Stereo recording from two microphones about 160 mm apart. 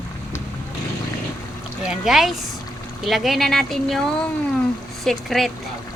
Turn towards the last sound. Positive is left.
turn(degrees=0)  # may be behind; listen again after turning